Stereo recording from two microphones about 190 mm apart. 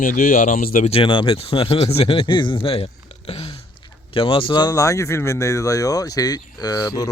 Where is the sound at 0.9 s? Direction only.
25° left (ahead or behind).